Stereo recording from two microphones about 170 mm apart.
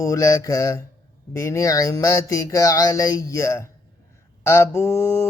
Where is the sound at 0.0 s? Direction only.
20° left (ahead or behind).